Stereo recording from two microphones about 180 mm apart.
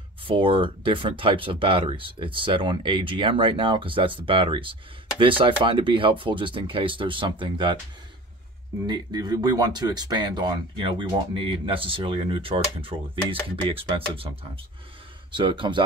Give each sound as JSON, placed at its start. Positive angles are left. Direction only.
{"t": 0.4, "sound": "speech", "side_deg": -30}
{"t": 8.8, "sound": "speech", "side_deg": -25}